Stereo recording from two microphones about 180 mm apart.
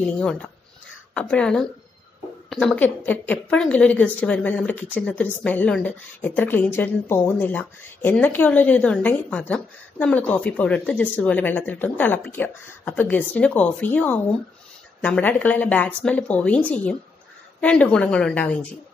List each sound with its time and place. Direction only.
0.0 s a woman's voice: 5° left (ahead or behind)